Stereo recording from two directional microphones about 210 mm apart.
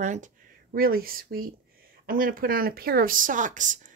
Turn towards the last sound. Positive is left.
turn(degrees=-40)  # may be behind; listen again after turning